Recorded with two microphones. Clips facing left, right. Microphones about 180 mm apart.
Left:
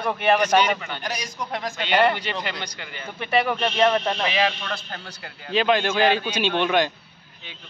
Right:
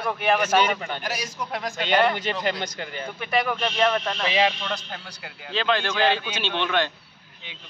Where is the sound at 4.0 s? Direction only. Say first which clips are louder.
Left 3 dB; 25° left (ahead or behind).